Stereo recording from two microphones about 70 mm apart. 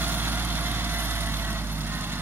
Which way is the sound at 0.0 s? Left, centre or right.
Right.